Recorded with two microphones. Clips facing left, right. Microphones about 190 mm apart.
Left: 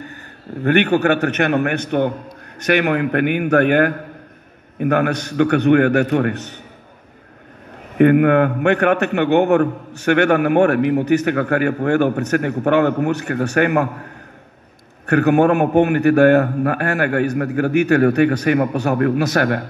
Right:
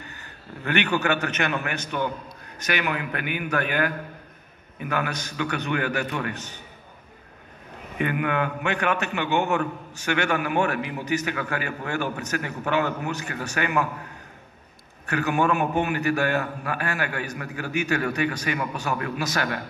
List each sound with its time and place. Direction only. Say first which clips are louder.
0.7 s a man's voice: left 9 dB; 55° left (ahead or behind)
8.0 s a man's voice: left 13 dB; 60° left (ahead or behind)
15.0 s a man's voice: left 10 dB; 60° left (ahead or behind)